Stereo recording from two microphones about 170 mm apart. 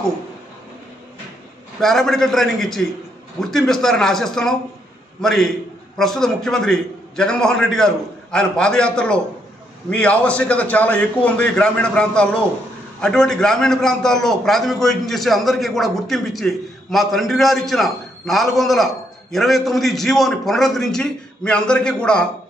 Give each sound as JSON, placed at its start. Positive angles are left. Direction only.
{"t": 1.8, "sound": "a man's voice", "side_deg": 0}